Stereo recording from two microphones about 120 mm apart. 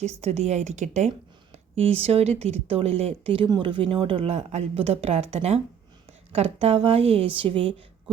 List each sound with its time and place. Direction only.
0.2 s a woman's voice: 65° right (ahead or behind)
1.9 s a woman's voice: 60° right (ahead or behind)